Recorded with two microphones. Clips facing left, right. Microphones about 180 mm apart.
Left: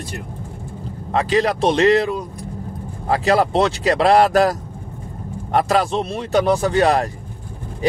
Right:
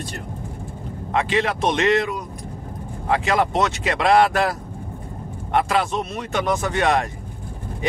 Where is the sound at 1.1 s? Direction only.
35° left (ahead or behind).